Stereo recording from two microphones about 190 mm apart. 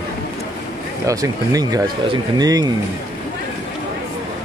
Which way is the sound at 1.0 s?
15° right (ahead or behind).